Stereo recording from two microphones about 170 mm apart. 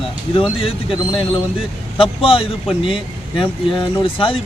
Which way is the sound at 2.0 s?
30° left (ahead or behind).